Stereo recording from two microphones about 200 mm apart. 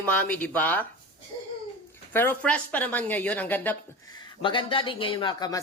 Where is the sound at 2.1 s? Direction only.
10° left (ahead or behind).